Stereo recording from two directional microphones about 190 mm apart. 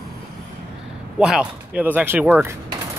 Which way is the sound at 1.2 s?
5° right (ahead or behind).